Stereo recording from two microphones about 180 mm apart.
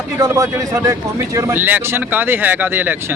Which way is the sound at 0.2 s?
20° right (ahead or behind).